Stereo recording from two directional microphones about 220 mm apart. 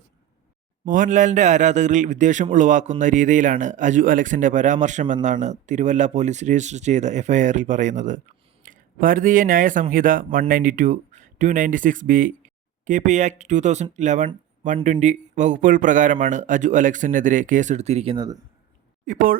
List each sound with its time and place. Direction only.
0.9 s a man's voice: 35° right (ahead or behind); by 18.4 s 20° right (ahead or behind)
19.0 s a man's voice: 40° right (ahead or behind)